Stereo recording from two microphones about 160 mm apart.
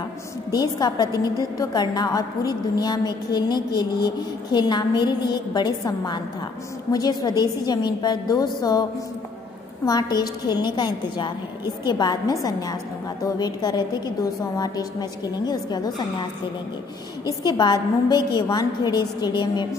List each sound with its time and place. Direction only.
0.5 s a woman's voice: 25° left (ahead or behind)
9.8 s a woman's voice: 25° left (ahead or behind)